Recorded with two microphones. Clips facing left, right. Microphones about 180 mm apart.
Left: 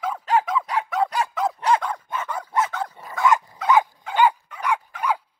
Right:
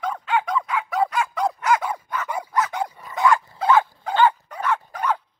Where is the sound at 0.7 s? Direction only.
35° left (ahead or behind).